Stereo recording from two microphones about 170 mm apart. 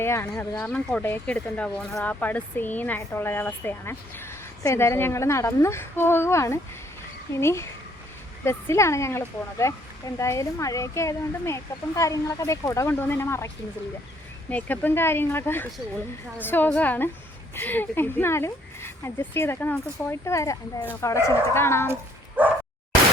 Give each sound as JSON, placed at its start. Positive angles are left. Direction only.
{"t": 0.0, "sound": "speech", "side_deg": 15}
{"t": 14.5, "sound": "speech", "side_deg": 10}
{"t": 22.4, "sound": "bow-wow", "side_deg": -10}